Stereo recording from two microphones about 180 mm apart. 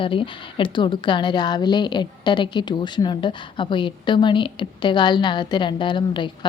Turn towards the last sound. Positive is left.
turn(degrees=25)  # may be behind; listen again after turning